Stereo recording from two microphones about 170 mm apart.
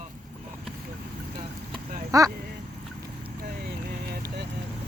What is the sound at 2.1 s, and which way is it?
Speech, 20° right (ahead or behind).